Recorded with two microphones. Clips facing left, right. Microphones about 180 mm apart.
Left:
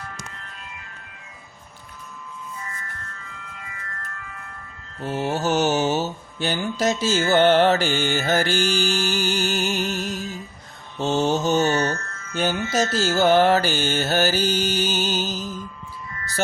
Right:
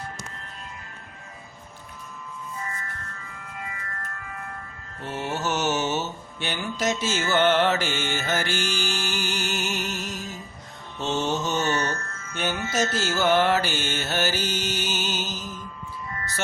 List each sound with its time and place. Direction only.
5.0 s mantra: 35° left (ahead or behind)